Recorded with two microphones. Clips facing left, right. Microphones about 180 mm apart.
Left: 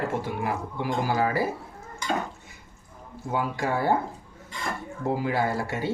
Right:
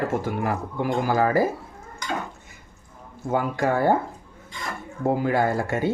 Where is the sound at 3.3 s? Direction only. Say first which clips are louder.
Right 4 dB; 50° right (ahead or behind).